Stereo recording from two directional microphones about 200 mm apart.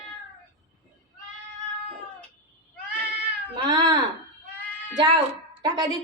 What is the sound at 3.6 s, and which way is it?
Speech, 20° right (ahead or behind).